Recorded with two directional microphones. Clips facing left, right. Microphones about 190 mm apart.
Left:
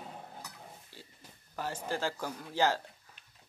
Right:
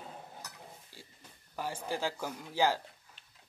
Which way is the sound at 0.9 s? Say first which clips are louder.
Left 1 dB; 10° right (ahead or behind).